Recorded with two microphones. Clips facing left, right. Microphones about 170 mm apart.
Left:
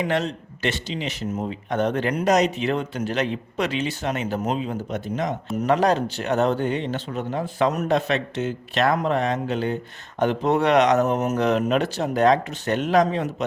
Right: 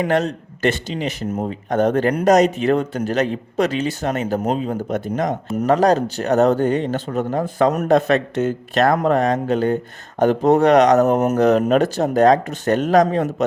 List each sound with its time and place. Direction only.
0.0 s speech: 45° right (ahead or behind)